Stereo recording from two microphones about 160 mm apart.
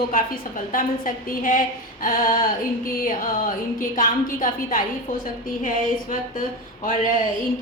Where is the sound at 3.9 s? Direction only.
60° left (ahead or behind).